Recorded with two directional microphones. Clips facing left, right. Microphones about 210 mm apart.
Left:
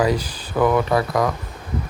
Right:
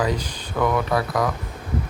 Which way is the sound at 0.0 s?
10° left (ahead or behind).